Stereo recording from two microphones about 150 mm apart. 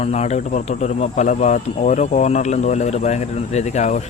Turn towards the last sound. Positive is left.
turn(degrees=50)  # may be behind; listen again after turning